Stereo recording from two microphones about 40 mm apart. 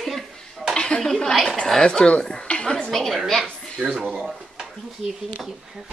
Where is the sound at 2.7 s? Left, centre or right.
Centre.